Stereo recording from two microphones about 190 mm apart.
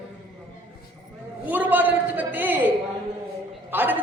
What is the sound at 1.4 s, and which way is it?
A man's voice, 10° right (ahead or behind).